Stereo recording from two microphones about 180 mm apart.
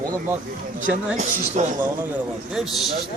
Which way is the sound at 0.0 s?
15° right (ahead or behind).